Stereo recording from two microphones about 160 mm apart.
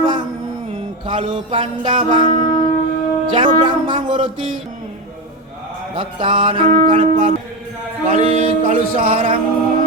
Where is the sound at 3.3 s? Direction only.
30° right (ahead or behind).